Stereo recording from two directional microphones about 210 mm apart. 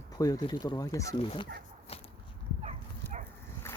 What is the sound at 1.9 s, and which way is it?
Walk, 30° left (ahead or behind).